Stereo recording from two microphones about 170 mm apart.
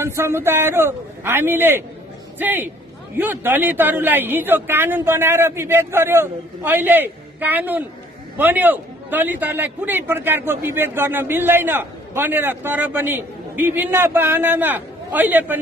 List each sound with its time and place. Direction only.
0.0 s a man's voice: 15° right (ahead or behind)